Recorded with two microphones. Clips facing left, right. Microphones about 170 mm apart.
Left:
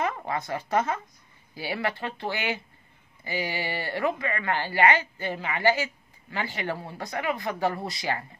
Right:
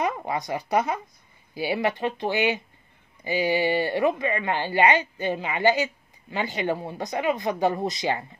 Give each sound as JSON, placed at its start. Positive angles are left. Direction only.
{"t": 0.0, "sound": "speech", "side_deg": -15}